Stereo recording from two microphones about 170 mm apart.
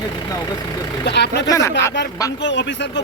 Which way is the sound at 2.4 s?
90° left.